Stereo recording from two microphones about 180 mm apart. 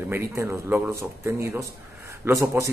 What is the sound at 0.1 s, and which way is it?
Speech, 15° right (ahead or behind).